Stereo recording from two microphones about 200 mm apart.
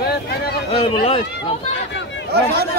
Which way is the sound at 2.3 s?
55° right (ahead or behind).